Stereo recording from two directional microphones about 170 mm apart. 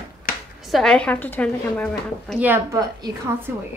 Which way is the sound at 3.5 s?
15° right (ahead or behind).